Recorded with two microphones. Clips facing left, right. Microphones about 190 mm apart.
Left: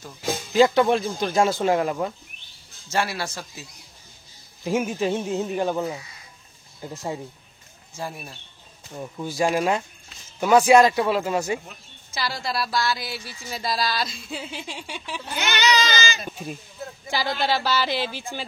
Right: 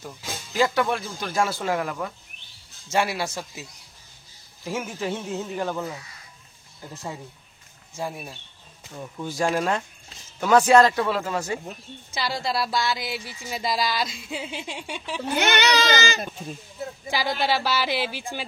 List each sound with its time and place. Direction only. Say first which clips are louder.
0.5 s speech: left 5 dB; 25° left (ahead or behind)
2.9 s speech: right 2 dB; 15° right (ahead or behind)
4.6 s speech: left 6 dB; 20° left (ahead or behind)
7.9 s speech: right 2 dB; 15° right (ahead or behind)
8.9 s speech: left 2 dB; 10° left (ahead or behind)
11.6 s speech: right 7 dB; 25° right (ahead or behind)
15.3 s speech: right 1 dB; 55° right (ahead or behind)
16.3 s speech: left 2 dB; 10° left (ahead or behind)
17.1 s speech: even; 10° right (ahead or behind)